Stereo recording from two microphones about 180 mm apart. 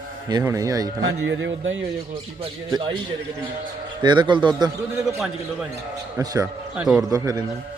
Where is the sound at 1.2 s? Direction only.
90° right.